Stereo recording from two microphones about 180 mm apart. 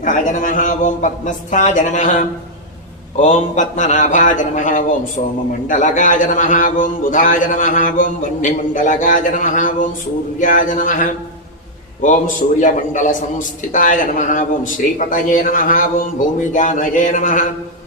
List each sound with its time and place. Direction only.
0.0 s a man's voice: 45° left (ahead or behind)